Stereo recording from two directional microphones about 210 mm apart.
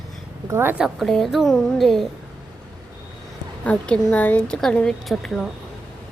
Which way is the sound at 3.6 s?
5° left (ahead or behind).